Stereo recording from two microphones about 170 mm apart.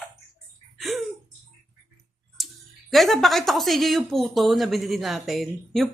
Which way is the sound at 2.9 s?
Centre (ahead or behind).